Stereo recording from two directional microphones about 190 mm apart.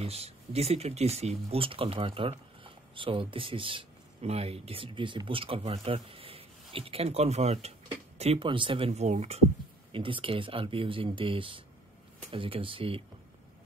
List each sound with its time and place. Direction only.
0.0 s speech: 35° right (ahead or behind)